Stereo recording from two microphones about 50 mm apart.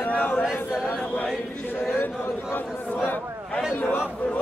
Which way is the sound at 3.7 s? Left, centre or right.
Left.